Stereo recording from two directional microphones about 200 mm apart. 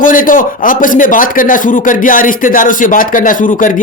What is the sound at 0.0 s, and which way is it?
A man's voice, 40° left (ahead or behind).